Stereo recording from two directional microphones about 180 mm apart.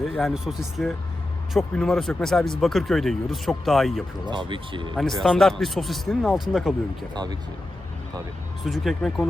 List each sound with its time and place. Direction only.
0.0 s speech: centre (ahead or behind)
4.3 s speech: 25° right (ahead or behind)
4.9 s speech: centre (ahead or behind)
7.1 s speech: 25° right (ahead or behind)
8.6 s speech: centre (ahead or behind)